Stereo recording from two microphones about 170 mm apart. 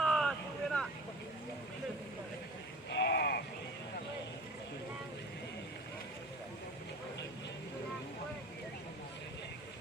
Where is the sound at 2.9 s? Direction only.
80° left.